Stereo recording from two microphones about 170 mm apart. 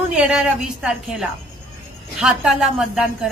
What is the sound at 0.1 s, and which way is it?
A woman's voice, 5° right (ahead or behind).